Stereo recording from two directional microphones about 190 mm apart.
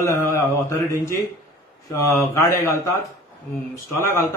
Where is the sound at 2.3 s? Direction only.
15° left (ahead or behind).